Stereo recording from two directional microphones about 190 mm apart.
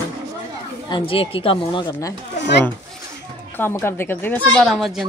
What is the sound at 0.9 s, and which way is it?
Speech, 25° left (ahead or behind).